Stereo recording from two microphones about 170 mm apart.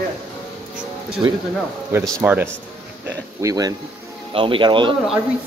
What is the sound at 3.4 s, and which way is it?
Speech, 20° right (ahead or behind).